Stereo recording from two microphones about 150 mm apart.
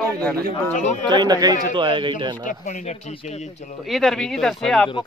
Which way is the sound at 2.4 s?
55° left (ahead or behind).